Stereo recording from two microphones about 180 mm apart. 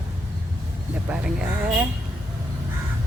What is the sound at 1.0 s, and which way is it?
Speech, 5° right (ahead or behind).